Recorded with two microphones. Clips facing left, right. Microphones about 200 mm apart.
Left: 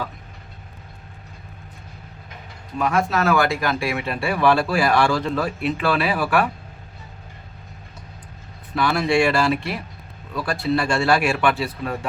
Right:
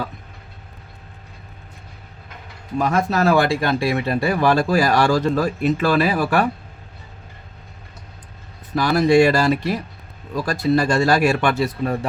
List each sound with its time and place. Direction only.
2.7 s speech: 40° right (ahead or behind)
8.7 s speech: 40° right (ahead or behind)